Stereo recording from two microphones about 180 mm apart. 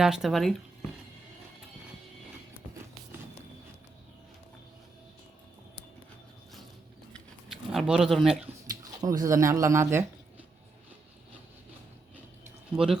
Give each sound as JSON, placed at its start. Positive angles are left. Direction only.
{"t": 0.0, "sound": "speech", "side_deg": 0}
{"t": 7.1, "sound": "a sound", "side_deg": 0}
{"t": 8.8, "sound": "speech", "side_deg": -20}
{"t": 12.7, "sound": "speech", "side_deg": -5}